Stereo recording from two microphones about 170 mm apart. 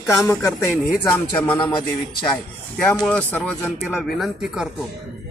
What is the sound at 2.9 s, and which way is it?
Speech, 5° left (ahead or behind).